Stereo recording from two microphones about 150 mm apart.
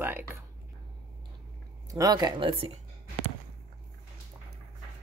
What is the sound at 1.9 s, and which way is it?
Speech, 25° right (ahead or behind).